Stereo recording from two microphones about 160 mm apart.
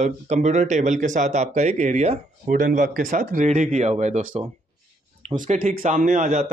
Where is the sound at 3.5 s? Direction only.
45° right (ahead or behind).